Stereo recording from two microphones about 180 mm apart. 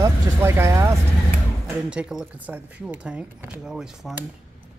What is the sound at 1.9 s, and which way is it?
Speech, 5° right (ahead or behind).